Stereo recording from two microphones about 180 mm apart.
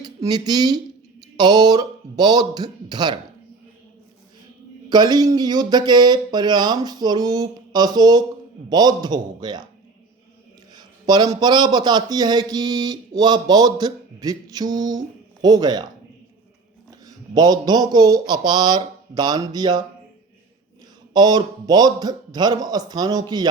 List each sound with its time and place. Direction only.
0.0 s a man's voice: 20° right (ahead or behind)
4.9 s a man's voice: 25° right (ahead or behind)
10.8 s a man's voice: 25° right (ahead or behind)
17.1 s a man's voice: 20° right (ahead or behind)
21.1 s a man's voice: 25° right (ahead or behind)